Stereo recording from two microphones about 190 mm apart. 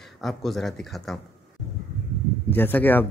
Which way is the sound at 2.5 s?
10° left (ahead or behind).